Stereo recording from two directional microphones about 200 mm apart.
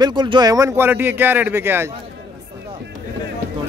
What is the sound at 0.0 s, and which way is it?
Speech, 25° right (ahead or behind).